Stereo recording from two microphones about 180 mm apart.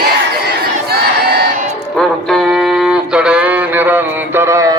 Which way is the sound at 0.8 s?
60° right (ahead or behind).